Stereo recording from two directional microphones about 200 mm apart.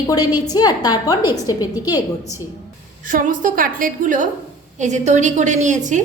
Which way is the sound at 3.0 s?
40° right (ahead or behind).